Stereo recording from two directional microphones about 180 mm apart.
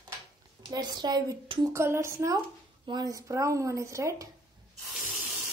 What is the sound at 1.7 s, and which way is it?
A woman's voice, 15° right (ahead or behind).